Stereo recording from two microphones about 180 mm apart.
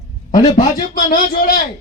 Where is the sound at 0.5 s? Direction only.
50° left (ahead or behind).